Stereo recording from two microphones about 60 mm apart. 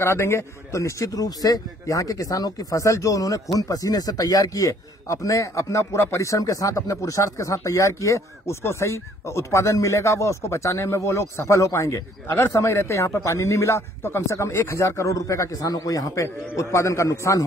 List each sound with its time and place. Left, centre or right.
0.0 s a man's voice: left